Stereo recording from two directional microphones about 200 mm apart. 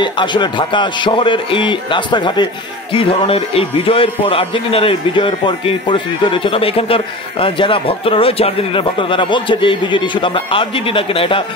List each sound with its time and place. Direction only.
0.0 s a man's voice: 25° left (ahead or behind)